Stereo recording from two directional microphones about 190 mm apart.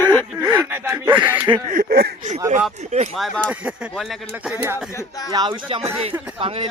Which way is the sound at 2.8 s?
40° right (ahead or behind).